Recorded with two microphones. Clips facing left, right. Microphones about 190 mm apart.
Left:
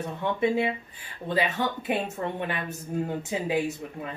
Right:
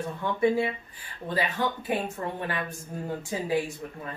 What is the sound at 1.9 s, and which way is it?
Speech, 25° left (ahead or behind).